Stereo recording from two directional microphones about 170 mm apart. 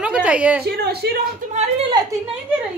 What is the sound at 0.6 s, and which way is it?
Speech, 70° right (ahead or behind).